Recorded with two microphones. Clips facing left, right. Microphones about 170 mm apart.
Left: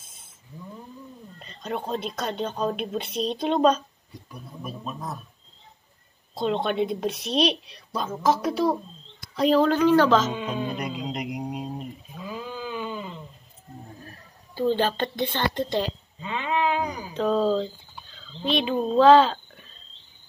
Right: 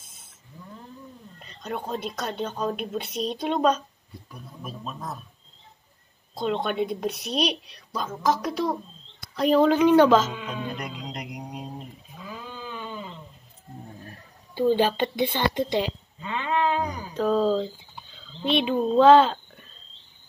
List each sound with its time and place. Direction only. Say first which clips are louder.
1.4 s a sound: left 2 dB; centre (ahead or behind)
1.8 s a woman's voice: left 1 dB; 5° right (ahead or behind)
2.3 s a woman's voice: left 2 dB; 20° left (ahead or behind)
2.7 s a woman's voice: left 1 dB; 5° right (ahead or behind)
4.3 s speech: left 2 dB; centre (ahead or behind)
6.3 s a woman's voice: left 1 dB; centre (ahead or behind)
9.3 s speech: left 1 dB; centre (ahead or behind)
9.6 s a woman's voice: right 3 dB; 10° right (ahead or behind)
10.3 s a sound: left 4 dB; 30° left (ahead or behind); by 13.1 s 10° left (ahead or behind)
14.6 s a woman's voice: right 2 dB; 10° right (ahead or behind)
16.2 s a sound: even; 20° left (ahead or behind)
17.1 s a sound: even; 5° right (ahead or behind)
18.6 s a child's voice: right 1 dB; 5° right (ahead or behind)